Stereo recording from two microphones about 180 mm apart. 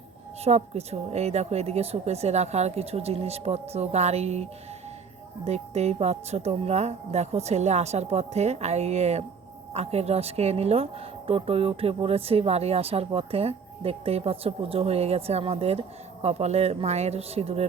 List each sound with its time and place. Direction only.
0.4 s speech: 35° right (ahead or behind)
5.5 s speech: 35° right (ahead or behind)